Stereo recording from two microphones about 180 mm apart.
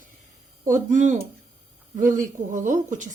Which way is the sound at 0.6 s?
45° right (ahead or behind).